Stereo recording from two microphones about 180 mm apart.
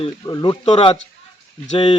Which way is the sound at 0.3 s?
25° left (ahead or behind).